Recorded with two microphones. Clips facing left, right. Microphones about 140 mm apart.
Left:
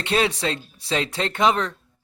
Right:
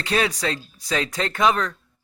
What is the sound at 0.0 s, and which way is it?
Speech, 25° left (ahead or behind).